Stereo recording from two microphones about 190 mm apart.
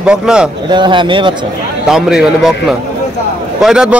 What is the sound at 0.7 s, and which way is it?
Speech, 25° right (ahead or behind).